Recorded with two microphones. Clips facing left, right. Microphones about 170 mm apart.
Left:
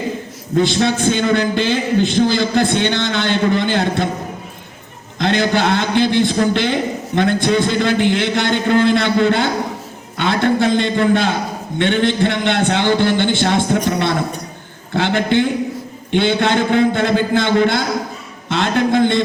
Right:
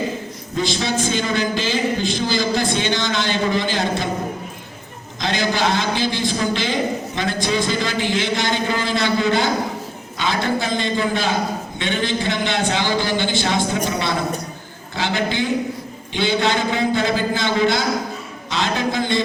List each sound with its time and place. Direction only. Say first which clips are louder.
0.5 s a man's voice: left 6 dB; 60° left (ahead or behind)
5.2 s a man's voice: left 5 dB; 60° left (ahead or behind)